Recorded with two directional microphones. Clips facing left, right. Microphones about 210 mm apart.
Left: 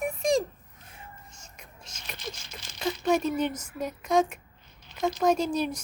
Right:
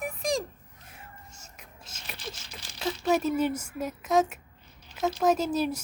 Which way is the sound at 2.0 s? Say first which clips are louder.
Left 1 dB; centre (ahead or behind).